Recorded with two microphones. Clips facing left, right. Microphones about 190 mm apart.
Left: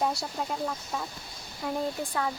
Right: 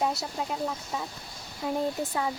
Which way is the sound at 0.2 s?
5° right (ahead or behind).